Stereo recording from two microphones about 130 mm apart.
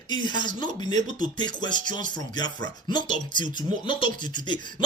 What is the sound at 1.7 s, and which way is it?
Speech, 90° right.